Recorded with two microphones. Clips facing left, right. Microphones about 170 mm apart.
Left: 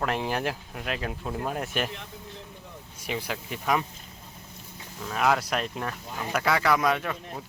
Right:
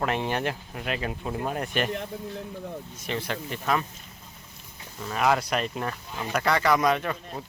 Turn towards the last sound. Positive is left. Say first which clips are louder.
# right 2 dB
turn(degrees=5)  # may be behind; listen again after turning